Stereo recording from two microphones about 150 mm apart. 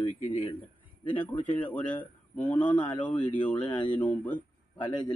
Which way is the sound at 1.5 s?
10° left (ahead or behind).